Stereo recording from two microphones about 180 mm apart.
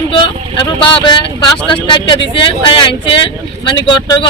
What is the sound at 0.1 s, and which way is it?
Speech, 30° left (ahead or behind).